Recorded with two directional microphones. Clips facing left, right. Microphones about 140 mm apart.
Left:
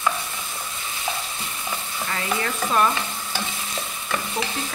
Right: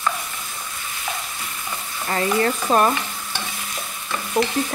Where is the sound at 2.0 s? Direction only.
40° right (ahead or behind).